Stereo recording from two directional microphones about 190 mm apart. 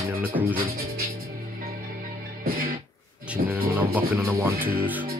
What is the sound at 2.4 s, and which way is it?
Music, 50° right (ahead or behind).